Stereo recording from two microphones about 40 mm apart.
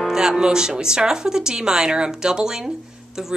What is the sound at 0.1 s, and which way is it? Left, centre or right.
Speech, centre.